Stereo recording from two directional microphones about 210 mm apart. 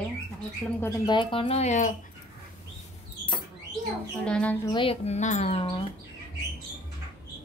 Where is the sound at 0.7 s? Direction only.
15° left (ahead or behind); by 2.0 s 35° left (ahead or behind).